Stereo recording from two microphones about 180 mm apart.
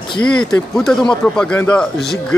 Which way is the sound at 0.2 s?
5° left (ahead or behind).